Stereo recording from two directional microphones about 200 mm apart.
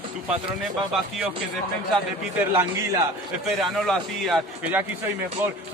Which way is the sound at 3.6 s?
Centre (ahead or behind).